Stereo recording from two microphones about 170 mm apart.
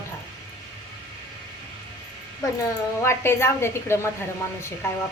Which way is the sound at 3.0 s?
15° left (ahead or behind).